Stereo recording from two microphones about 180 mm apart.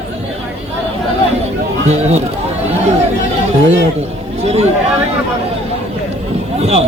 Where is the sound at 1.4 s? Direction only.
40° right (ahead or behind).